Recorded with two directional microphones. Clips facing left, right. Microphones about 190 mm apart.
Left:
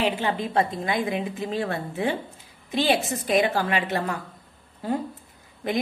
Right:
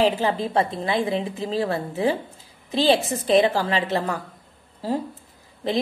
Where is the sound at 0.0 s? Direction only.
35° right (ahead or behind).